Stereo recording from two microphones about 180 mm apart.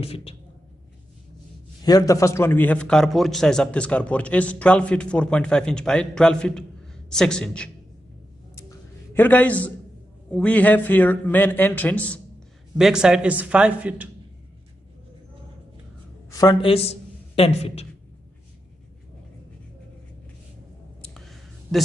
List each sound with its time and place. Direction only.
0.0 s speech: 30° left (ahead or behind)
1.9 s a man's voice: 20° left (ahead or behind); by 7.7 s 5° left (ahead or behind)
8.5 s a sound: 15° left (ahead or behind)
10.3 s a man's voice: 10° left (ahead or behind)
12.7 s a man's voice: 5° right (ahead or behind)
16.3 s a woman's voice: 20° left (ahead or behind)
21.0 s clicking: centre (ahead or behind)